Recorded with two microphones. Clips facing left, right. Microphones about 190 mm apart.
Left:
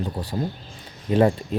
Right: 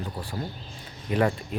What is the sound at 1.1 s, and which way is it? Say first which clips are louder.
Speech: left 6 dB; 25° left (ahead or behind).